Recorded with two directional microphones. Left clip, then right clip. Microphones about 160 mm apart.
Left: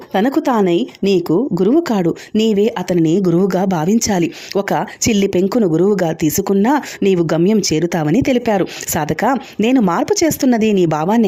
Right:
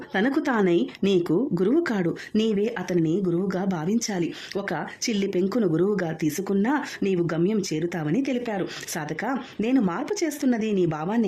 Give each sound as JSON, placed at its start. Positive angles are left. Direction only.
{"t": 0.1, "sound": "speech", "side_deg": 30}